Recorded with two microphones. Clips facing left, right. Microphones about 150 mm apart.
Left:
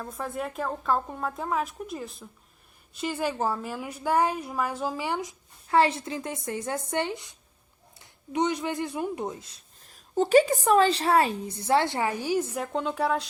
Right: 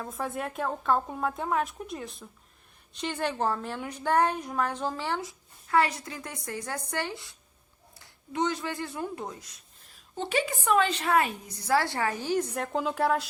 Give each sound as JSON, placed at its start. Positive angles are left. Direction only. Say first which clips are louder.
{"t": 0.0, "sound": "a woman's voice", "louder": "even", "side_deg": 0}